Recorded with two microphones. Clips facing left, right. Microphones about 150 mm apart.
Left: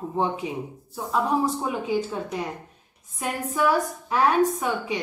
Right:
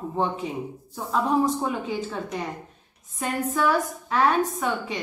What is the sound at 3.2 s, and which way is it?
A woman's voice, 10° left (ahead or behind).